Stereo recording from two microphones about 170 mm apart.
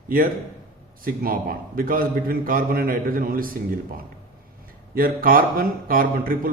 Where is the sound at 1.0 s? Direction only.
60° right (ahead or behind).